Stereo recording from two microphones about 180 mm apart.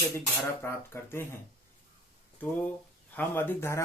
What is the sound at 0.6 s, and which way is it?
Speech, 15° left (ahead or behind).